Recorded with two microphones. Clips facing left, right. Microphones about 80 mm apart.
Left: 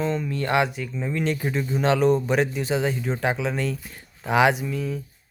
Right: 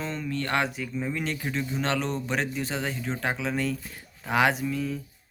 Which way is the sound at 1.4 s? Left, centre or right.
Centre.